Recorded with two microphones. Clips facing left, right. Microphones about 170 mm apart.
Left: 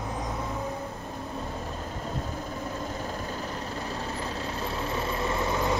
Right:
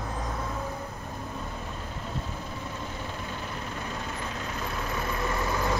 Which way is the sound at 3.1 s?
40° left (ahead or behind).